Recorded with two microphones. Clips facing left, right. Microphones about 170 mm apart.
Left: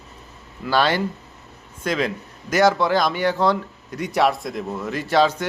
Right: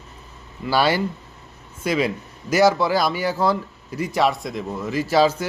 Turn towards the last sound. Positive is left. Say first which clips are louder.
# right 1 dB
turn(degrees=-5)  # may be behind; listen again after turning